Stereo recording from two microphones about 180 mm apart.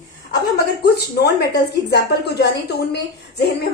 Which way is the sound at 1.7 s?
70° left (ahead or behind).